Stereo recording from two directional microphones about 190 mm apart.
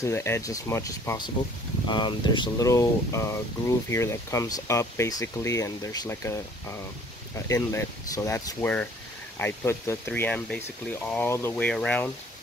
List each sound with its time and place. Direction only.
0.0 s speech: 15° left (ahead or behind)
7.4 s speech: 15° left (ahead or behind)